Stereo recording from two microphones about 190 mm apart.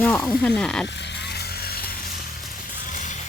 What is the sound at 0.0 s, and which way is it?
Speech, 5° left (ahead or behind).